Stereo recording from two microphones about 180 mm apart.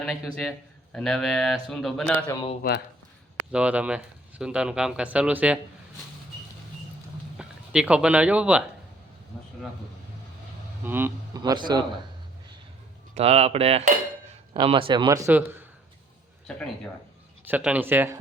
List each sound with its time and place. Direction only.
0.0 s speech: centre (ahead or behind)
2.6 s speech: 55° left (ahead or behind)
3.5 s speech: 5° right (ahead or behind)
7.3 s speech: 5° right (ahead or behind)
10.8 s speech: 10° right (ahead or behind)
13.1 s cutlery: 35° right (ahead or behind)
14.5 s speech: 30° right (ahead or behind); by 15.6 s 10° right (ahead or behind)
16.5 s speech: 5° left (ahead or behind)
17.4 s speech: 10° right (ahead or behind)